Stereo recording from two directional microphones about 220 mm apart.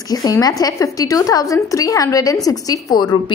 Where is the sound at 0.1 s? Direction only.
15° left (ahead or behind).